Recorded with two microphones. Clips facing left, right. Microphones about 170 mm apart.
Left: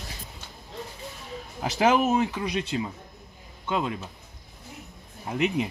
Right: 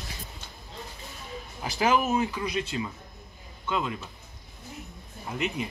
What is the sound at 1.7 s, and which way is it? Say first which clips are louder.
Speech: left 3 dB; 65° left (ahead or behind).